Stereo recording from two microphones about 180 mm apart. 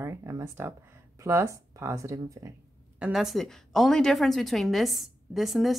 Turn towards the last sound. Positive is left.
turn(degrees=0)  # may be behind; listen again after turning